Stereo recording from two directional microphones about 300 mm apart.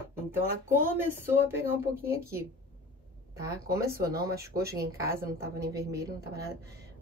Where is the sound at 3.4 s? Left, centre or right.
Centre.